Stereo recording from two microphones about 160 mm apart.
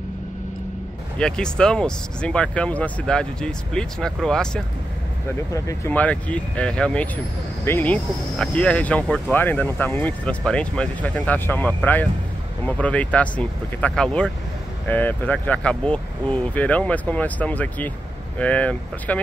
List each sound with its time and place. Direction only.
1.1 s speech: 5° left (ahead or behind)
5.5 s speech: 20° left (ahead or behind)
5.9 s speech: 10° left (ahead or behind)